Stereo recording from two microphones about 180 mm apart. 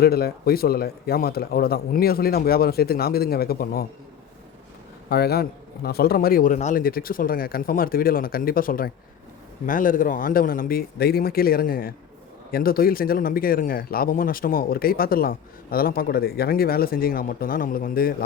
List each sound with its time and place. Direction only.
0.0 s a man's voice: 60° left (ahead or behind)
5.0 s a man's voice: 60° left (ahead or behind)